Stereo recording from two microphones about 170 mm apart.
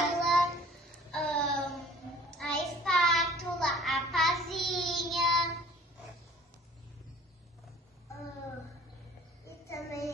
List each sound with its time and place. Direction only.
0.2 s child singing: centre (ahead or behind)
9.5 s child singing: 20° left (ahead or behind)